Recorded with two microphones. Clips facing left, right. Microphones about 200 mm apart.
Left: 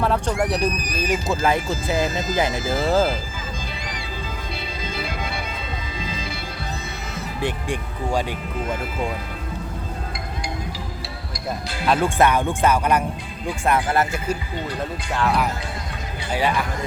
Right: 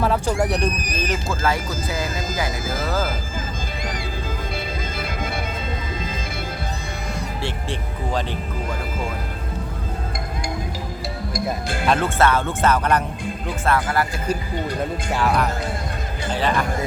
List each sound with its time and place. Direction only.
0.0 s speech: centre (ahead or behind); by 3.1 s 25° left (ahead or behind)
4.8 s music: 50° right (ahead or behind)
7.4 s speech: 10° left (ahead or behind)
11.3 s speech: 50° right (ahead or behind)
11.9 s speech: 10° left (ahead or behind)
13.7 s speech: 20° left (ahead or behind)
15.1 s speech: 5° right (ahead or behind)
16.3 s speech: 10° left (ahead or behind)